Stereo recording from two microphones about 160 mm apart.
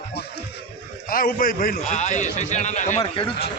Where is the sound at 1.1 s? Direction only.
65° left (ahead or behind).